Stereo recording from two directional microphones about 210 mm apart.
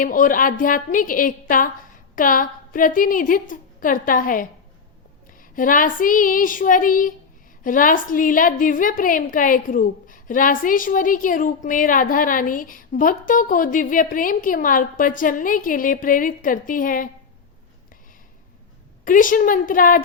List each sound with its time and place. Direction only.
0.0 s a woman's voice: 40° left (ahead or behind)
5.5 s a woman's voice: 40° left (ahead or behind)
19.0 s a woman's voice: 40° left (ahead or behind)